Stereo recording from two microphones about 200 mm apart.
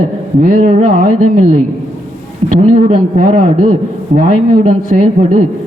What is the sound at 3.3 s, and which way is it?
A man's voice, 30° right (ahead or behind).